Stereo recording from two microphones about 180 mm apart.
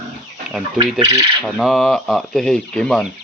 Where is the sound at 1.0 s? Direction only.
20° right (ahead or behind).